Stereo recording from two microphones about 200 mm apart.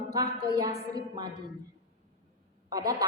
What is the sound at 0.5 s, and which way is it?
Speech, 20° right (ahead or behind).